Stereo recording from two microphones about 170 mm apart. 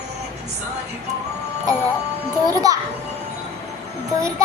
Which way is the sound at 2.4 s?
20° right (ahead or behind).